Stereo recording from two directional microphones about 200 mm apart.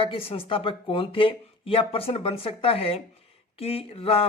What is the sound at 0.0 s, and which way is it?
Speech, 25° left (ahead or behind).